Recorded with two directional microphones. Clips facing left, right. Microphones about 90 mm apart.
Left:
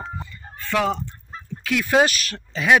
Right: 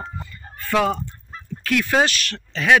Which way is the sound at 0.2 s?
Centre (ahead or behind).